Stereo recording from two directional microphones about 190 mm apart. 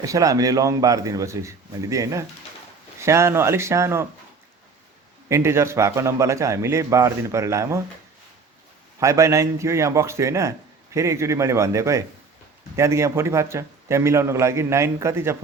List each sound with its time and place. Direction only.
0.0 s a man's voice: 15° right (ahead or behind)
5.3 s a man's voice: 15° right (ahead or behind)
9.0 s a man's voice: 15° right (ahead or behind)